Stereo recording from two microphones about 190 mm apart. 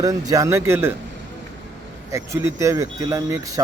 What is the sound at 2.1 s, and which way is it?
Speech, 15° right (ahead or behind).